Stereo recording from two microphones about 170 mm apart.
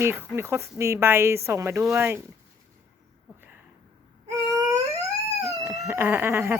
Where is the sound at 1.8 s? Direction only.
5° right (ahead or behind).